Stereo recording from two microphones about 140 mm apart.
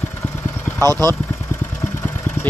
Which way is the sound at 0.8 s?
25° right (ahead or behind).